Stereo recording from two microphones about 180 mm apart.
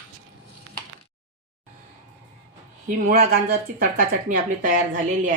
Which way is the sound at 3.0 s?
60° right (ahead or behind).